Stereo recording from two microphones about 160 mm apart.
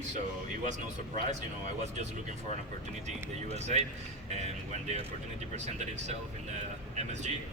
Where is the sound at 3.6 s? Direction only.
45° right (ahead or behind).